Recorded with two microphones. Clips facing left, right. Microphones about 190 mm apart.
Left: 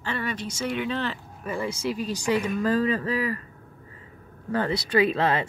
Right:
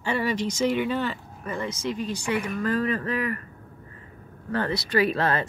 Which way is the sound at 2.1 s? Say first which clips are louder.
Left 3 dB; 35° left (ahead or behind).